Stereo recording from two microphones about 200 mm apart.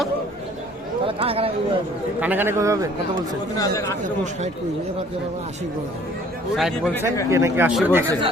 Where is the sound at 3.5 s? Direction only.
15° left (ahead or behind).